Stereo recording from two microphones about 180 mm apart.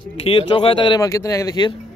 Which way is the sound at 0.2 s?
30° left (ahead or behind).